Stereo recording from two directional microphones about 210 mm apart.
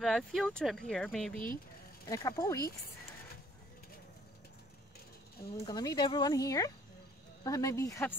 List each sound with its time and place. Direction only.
0.0 s speech: centre (ahead or behind)
2.0 s speech: 15° left (ahead or behind)
5.7 s speech: 20° left (ahead or behind)